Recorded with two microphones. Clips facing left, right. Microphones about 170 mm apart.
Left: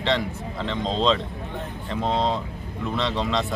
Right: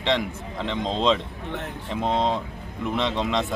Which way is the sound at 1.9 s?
20° right (ahead or behind).